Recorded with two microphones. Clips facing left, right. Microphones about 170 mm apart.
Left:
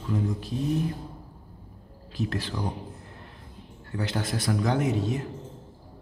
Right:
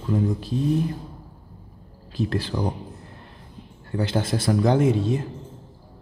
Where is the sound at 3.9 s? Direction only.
30° right (ahead or behind).